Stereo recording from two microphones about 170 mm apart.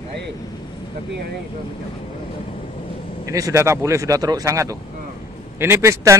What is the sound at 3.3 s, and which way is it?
A man's voice, 20° right (ahead or behind).